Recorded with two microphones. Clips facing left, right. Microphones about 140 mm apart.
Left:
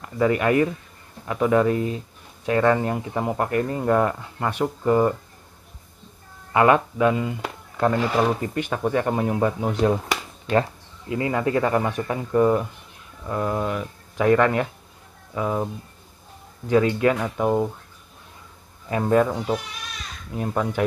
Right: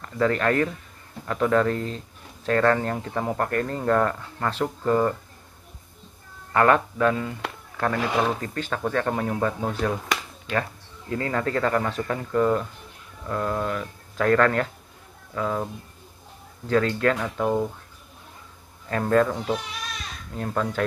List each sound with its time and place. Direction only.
0.0 s speech: 10° left (ahead or behind)
6.5 s speech: 10° left (ahead or behind)
11.1 s speech: 15° left (ahead or behind)
18.9 s speech: 15° left (ahead or behind)